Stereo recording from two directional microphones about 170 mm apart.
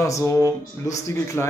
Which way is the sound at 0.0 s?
20° left (ahead or behind).